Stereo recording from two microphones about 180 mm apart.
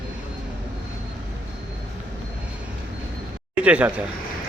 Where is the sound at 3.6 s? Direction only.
5° right (ahead or behind).